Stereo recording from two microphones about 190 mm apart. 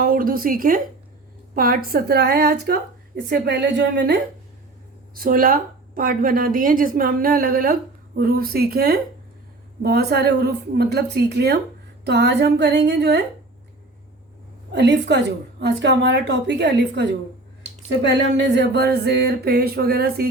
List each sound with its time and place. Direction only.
0.0 s a woman's voice: 50° right (ahead or behind)
5.1 s a woman's voice: 50° right (ahead or behind)
14.7 s a woman's voice: 65° right (ahead or behind)